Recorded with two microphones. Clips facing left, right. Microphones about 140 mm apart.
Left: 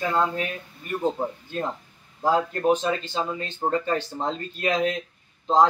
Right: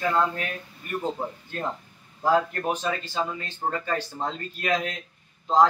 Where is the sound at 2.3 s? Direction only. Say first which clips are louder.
Left 5 dB; 25° left (ahead or behind).